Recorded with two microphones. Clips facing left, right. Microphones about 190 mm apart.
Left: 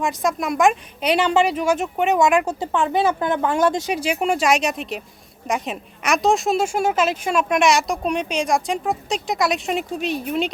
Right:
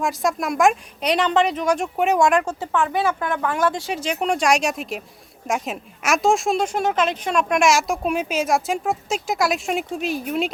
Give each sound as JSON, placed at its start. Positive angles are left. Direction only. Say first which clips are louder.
{"t": 0.0, "sound": "a woman's voice", "louder": "even", "side_deg": 0}
{"t": 2.6, "sound": "a woman's voice", "louder": "left 2 dB", "side_deg": 20}